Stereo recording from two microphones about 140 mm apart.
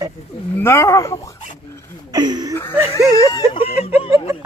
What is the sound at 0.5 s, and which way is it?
Speech, 20° left (ahead or behind).